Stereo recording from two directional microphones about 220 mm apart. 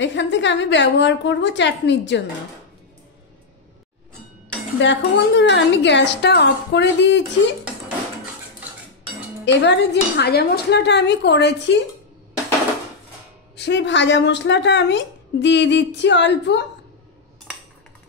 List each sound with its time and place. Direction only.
0.0 s a woman's voice: 55° left (ahead or behind)
4.7 s a woman's voice: 55° left (ahead or behind)
9.4 s a woman's voice: 55° left (ahead or behind)
13.6 s a woman's voice: 50° left (ahead or behind)